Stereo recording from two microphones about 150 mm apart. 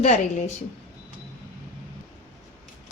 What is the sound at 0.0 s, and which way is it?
Speech, 50° left (ahead or behind).